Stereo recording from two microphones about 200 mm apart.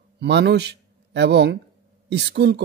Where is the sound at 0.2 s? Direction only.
60° right (ahead or behind).